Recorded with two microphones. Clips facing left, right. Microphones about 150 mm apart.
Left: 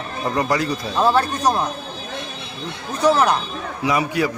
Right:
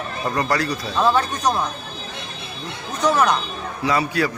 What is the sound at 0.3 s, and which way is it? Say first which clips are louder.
Speech: left 2 dB; 15° left (ahead or behind).